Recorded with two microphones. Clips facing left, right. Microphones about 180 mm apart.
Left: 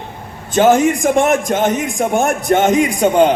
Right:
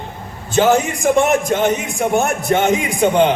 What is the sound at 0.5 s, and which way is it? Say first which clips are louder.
A man's voice: left 3 dB; 50° left (ahead or behind).